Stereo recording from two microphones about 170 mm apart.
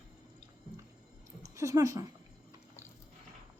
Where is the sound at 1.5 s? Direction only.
20° right (ahead or behind).